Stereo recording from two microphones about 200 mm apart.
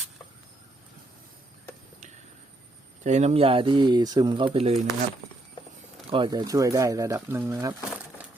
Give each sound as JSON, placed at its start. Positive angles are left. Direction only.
{"t": 3.0, "sound": "speech", "side_deg": -35}
{"t": 6.1, "sound": "speech", "side_deg": -25}